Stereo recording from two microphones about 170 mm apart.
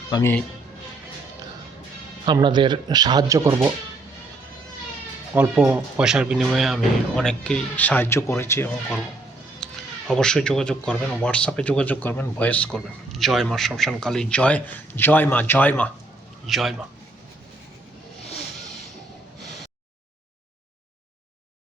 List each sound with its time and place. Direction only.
0.1 s speech: 15° left (ahead or behind)
2.2 s speech: 25° right (ahead or behind)
5.3 s speech: 10° right (ahead or behind); by 8.7 s 15° left (ahead or behind)
9.6 s music: 5° left (ahead or behind)
10.1 s speech: 5° left (ahead or behind)
19.4 s a sound: centre (ahead or behind)